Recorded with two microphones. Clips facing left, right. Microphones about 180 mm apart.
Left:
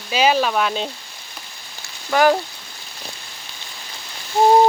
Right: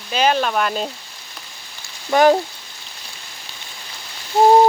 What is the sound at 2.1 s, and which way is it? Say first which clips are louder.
Speech: right 2 dB; 20° right (ahead or behind).